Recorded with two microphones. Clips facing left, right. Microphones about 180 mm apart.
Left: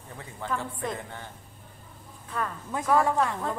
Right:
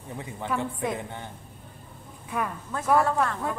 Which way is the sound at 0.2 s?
20° right (ahead or behind).